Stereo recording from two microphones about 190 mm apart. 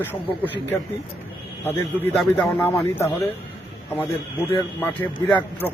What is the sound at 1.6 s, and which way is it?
Speech, 10° left (ahead or behind).